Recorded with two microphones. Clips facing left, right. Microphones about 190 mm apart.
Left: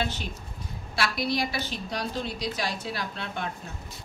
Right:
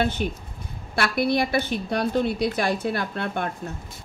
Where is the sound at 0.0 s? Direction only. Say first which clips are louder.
Right 7 dB; 55° right (ahead or behind).